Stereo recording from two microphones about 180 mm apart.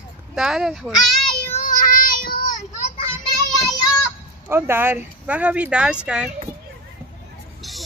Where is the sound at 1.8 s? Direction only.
50° left (ahead or behind).